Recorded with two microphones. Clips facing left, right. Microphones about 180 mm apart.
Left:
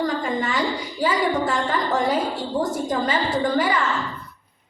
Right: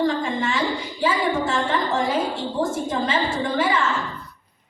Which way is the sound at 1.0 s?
25° right (ahead or behind).